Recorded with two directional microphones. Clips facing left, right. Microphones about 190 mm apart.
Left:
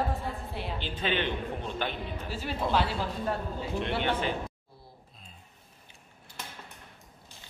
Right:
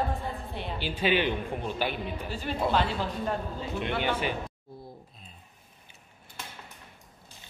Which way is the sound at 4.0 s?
10° right (ahead or behind).